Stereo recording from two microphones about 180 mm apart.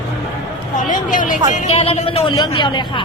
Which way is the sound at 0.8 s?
45° left (ahead or behind).